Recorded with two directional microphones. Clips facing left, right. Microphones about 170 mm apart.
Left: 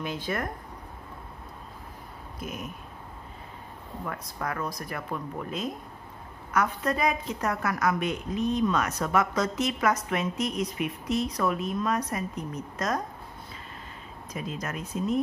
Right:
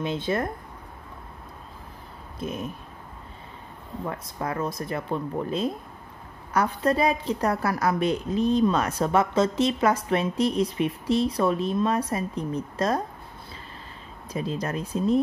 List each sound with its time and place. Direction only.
0.0 s speech: 25° right (ahead or behind)
2.4 s speech: 30° right (ahead or behind)
4.0 s a woman's voice: 25° right (ahead or behind)
14.3 s a woman's voice: 30° right (ahead or behind)